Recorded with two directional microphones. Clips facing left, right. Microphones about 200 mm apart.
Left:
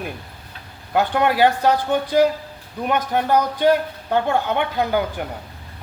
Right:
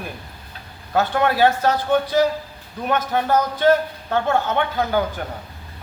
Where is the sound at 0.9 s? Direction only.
15° left (ahead or behind).